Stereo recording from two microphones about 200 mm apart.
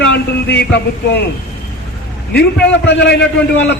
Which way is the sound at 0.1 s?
60° left (ahead or behind).